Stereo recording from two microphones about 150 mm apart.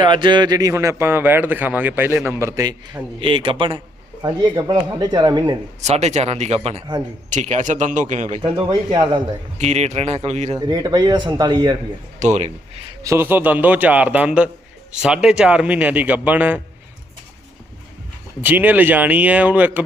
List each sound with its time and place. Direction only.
0.0 s speech: 30° right (ahead or behind)
5.8 s a man's voice: 50° right (ahead or behind)
8.4 s speech: 30° right (ahead or behind)
9.6 s a man's voice: 45° right (ahead or behind)
10.6 s speech: 30° right (ahead or behind)
12.2 s a man's voice: 50° right (ahead or behind)
13.0 s speech: 15° right (ahead or behind)
18.4 s speech: 10° right (ahead or behind)